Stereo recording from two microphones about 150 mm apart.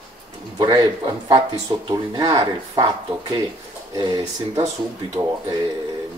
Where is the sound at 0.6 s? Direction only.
30° right (ahead or behind).